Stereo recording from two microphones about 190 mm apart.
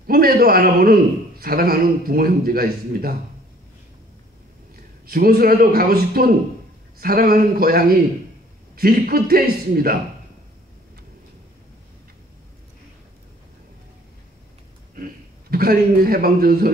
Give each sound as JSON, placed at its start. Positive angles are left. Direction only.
{"t": 0.0, "sound": "a man's voice", "side_deg": -50}
{"t": 5.0, "sound": "a man's voice", "side_deg": -50}
{"t": 15.5, "sound": "a man's voice", "side_deg": -50}